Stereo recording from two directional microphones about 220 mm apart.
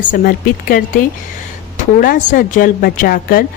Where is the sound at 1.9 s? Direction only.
40° left (ahead or behind).